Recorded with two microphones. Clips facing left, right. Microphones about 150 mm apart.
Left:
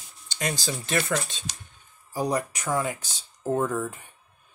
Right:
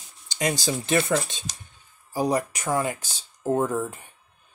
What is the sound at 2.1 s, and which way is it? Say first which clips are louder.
Speech: right 3 dB; 5° right (ahead or behind).